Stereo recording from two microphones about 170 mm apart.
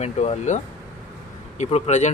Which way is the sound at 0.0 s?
40° left (ahead or behind).